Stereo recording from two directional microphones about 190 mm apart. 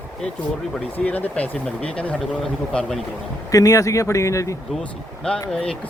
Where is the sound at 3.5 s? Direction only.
20° left (ahead or behind).